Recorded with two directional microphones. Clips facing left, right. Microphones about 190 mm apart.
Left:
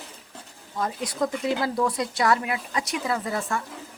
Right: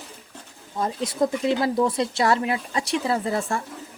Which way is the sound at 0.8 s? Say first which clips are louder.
Right 3 dB; 25° right (ahead or behind).